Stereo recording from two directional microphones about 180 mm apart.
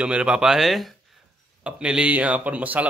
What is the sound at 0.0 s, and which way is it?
A man's voice, 5° right (ahead or behind).